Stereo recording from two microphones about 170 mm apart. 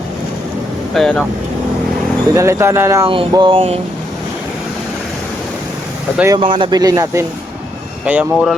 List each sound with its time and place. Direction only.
0.9 s speech: 5° left (ahead or behind)
2.3 s speech: 15° right (ahead or behind)
3.1 s a sound: 30° right (ahead or behind)
6.3 s speech: 30° right (ahead or behind); by 8.5 s 5° right (ahead or behind)